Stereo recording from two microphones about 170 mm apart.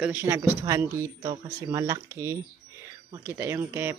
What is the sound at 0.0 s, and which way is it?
A man's voice, 15° right (ahead or behind).